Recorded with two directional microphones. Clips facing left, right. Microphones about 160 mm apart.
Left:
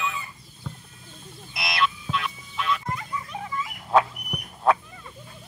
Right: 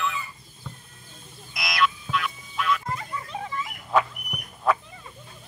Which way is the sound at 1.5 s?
30° left (ahead or behind).